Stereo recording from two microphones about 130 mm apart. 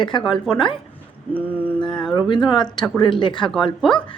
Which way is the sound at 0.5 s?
35° left (ahead or behind).